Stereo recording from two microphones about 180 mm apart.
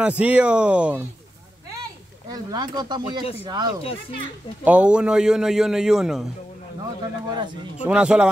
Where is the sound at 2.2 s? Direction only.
20° right (ahead or behind).